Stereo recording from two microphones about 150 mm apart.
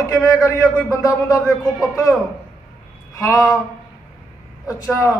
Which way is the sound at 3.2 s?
20° left (ahead or behind).